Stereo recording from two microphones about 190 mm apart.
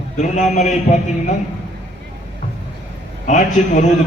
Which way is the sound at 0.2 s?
40° left (ahead or behind).